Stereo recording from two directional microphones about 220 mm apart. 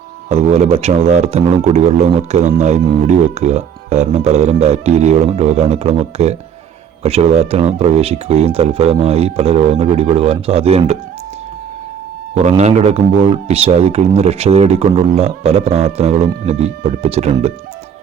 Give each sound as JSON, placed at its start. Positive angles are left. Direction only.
{"t": 0.3, "sound": "speech", "side_deg": -30}
{"t": 12.3, "sound": "speech", "side_deg": -30}